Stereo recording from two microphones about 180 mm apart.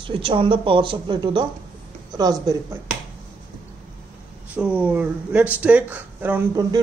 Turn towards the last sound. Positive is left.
turn(degrees=-15)  # may be behind; listen again after turning